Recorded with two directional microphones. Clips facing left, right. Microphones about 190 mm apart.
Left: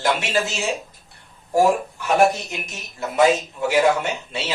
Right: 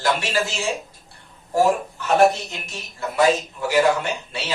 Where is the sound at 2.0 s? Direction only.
15° left (ahead or behind).